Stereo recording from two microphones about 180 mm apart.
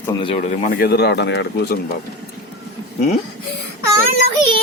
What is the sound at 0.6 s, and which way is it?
Speech, 60° left (ahead or behind).